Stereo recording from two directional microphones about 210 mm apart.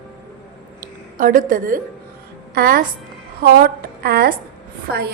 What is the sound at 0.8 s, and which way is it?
A woman's voice, 40° right (ahead or behind).